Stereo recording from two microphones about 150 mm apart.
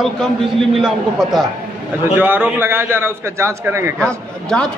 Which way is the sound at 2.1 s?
15° right (ahead or behind).